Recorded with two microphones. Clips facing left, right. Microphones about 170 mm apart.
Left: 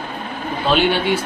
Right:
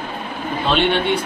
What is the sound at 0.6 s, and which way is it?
Speech, 5° left (ahead or behind).